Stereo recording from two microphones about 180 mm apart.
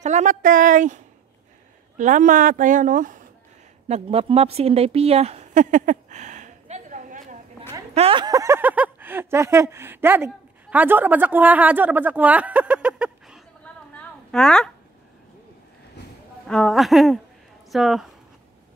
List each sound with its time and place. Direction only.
0.0 s speech: 40° right (ahead or behind)
3.9 s speech: 30° right (ahead or behind)
7.9 s speech: 30° right (ahead or behind); by 13.4 s 5° right (ahead or behind)
13.9 s a sound: 5° left (ahead or behind)
16.4 s a man's voice: 5° left (ahead or behind)